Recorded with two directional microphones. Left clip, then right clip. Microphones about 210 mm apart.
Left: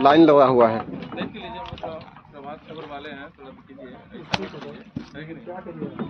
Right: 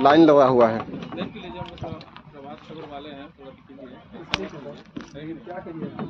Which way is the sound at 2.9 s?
25° left (ahead or behind).